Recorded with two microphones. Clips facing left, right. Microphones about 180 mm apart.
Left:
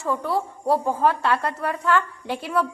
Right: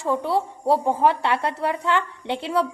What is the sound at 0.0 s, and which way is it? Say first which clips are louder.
A woman's voice: right 2 dB; 25° right (ahead or behind).